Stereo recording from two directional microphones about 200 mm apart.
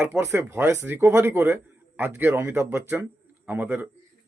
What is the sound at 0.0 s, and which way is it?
Speech, 10° right (ahead or behind).